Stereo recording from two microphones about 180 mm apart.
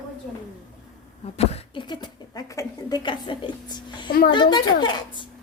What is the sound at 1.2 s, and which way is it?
Speech, 35° left (ahead or behind).